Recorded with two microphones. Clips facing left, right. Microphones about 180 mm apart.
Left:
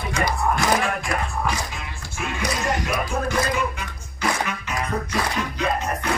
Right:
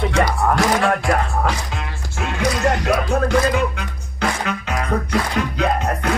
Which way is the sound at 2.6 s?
70° right (ahead or behind).